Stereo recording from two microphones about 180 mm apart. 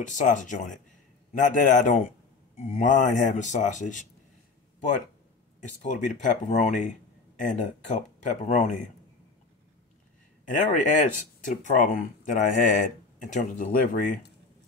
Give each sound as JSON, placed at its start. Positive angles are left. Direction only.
{"t": 0.0, "sound": "speech", "side_deg": 45}
{"t": 5.8, "sound": "speech", "side_deg": 45}
{"t": 10.4, "sound": "speech", "side_deg": 45}